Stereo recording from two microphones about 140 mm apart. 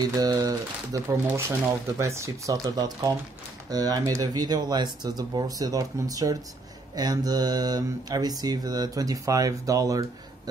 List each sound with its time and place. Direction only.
0.0 s speech: 25° right (ahead or behind)